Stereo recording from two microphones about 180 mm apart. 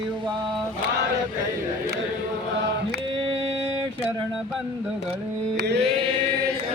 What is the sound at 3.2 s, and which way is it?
Music, 30° right (ahead or behind).